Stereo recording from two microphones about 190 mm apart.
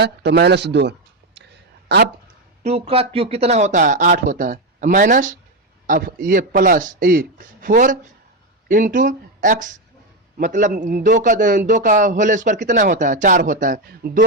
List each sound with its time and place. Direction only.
0.0 s speech: 60° right (ahead or behind)
2.6 s a man's voice: 30° right (ahead or behind)